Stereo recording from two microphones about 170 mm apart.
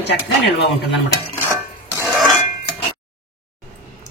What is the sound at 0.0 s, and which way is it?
Speech, 85° left.